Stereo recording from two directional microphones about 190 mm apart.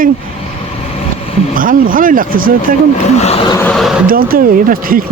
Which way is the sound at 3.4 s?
15° left (ahead or behind).